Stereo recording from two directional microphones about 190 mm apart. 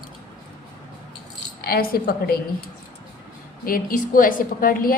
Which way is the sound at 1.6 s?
55° left (ahead or behind).